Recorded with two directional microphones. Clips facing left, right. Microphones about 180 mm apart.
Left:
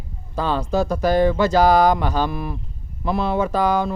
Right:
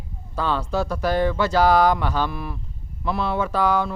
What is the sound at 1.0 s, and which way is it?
Speech, 40° left (ahead or behind).